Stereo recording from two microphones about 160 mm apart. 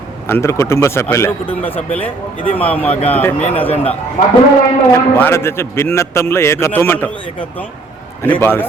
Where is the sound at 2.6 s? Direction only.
10° left (ahead or behind).